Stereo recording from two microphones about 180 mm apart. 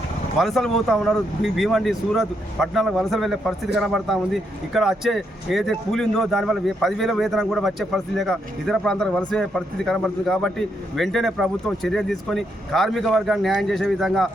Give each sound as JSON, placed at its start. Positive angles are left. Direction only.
{"t": 0.3, "sound": "speech", "side_deg": 0}